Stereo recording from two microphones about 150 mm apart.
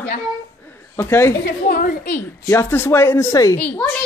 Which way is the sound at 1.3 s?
85° left.